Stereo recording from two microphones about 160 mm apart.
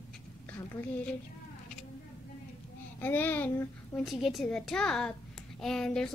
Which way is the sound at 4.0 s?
Centre (ahead or behind).